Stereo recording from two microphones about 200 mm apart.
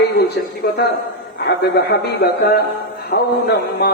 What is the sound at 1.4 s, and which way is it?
Speech, 55° left (ahead or behind).